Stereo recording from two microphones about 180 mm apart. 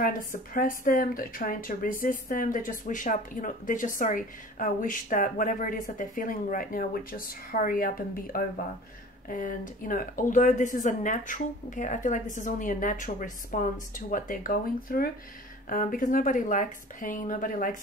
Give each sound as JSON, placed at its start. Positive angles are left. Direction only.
{"t": 0.0, "sound": "speech", "side_deg": 50}